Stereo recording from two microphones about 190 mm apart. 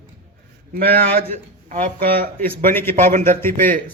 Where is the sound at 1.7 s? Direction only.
45° right (ahead or behind).